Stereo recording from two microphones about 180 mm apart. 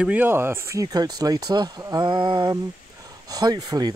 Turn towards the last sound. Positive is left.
turn(degrees=-20)  # may be behind; listen again after turning